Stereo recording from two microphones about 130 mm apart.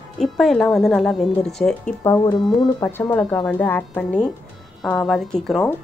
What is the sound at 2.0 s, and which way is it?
Speech, 30° left (ahead or behind).